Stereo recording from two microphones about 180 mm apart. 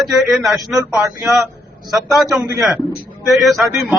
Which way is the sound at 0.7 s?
20° right (ahead or behind).